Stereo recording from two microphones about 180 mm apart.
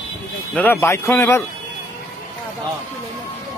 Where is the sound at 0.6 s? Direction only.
15° left (ahead or behind).